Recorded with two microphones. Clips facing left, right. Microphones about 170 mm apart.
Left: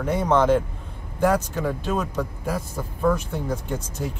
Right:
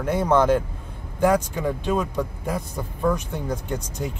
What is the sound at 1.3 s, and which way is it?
Speech, 15° right (ahead or behind).